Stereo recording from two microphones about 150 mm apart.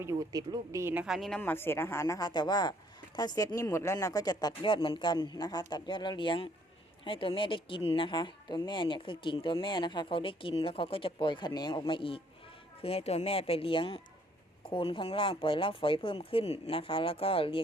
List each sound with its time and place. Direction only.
0.0 s speech: 20° right (ahead or behind)
1.0 s speech: centre (ahead or behind)
1.4 s speech: 15° left (ahead or behind); by 17.6 s 35° left (ahead or behind)